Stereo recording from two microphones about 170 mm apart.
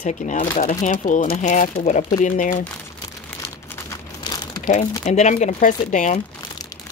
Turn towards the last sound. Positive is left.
turn(degrees=45)  # may be behind; listen again after turning